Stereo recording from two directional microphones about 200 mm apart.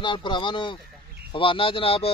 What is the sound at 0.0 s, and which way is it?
Speech, 25° left (ahead or behind).